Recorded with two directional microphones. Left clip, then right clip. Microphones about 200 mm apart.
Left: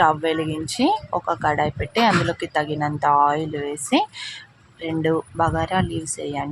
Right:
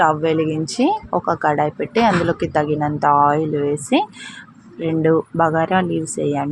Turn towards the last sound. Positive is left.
turn(degrees=-5)  # may be behind; listen again after turning